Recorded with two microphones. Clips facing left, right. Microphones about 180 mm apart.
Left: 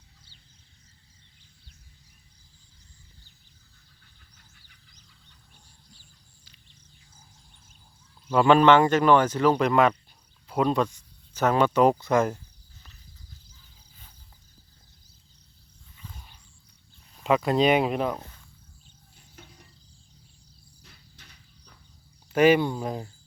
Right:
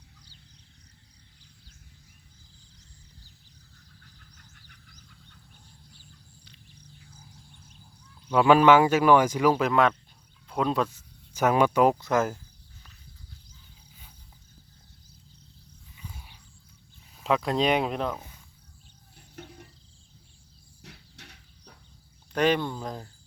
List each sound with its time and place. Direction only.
4.5 s a sound: 55° right (ahead or behind)
8.3 s speech: 5° right (ahead or behind)
16.0 s wild animals: 10° right (ahead or behind)
17.2 s speech: centre (ahead or behind)
19.1 s cricket: 65° right (ahead or behind)
20.8 s mechanisms: 70° right (ahead or behind)
22.3 s speech: 5° left (ahead or behind)